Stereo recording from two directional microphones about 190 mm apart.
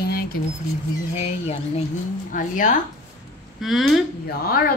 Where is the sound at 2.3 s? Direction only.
45° left (ahead or behind).